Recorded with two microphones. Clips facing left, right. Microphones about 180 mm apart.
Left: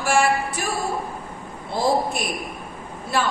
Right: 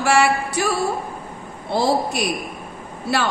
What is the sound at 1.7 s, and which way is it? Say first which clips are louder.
Speech: right 2 dB; 80° right.